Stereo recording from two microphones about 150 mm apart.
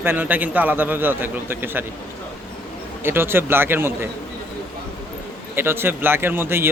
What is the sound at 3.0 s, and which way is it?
Speech, 15° right (ahead or behind).